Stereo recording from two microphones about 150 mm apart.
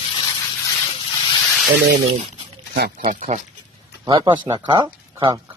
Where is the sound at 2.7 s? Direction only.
80° right; by 3.4 s 55° right (ahead or behind).